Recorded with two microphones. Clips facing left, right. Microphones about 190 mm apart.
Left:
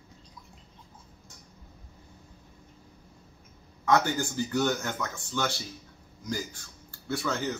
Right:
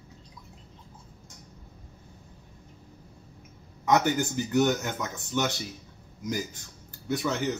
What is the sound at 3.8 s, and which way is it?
Speech, 20° right (ahead or behind).